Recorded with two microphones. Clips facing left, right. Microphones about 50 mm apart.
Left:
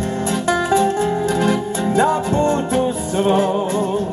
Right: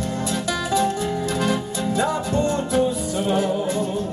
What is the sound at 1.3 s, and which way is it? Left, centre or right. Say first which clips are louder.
Music: left 5 dB; left.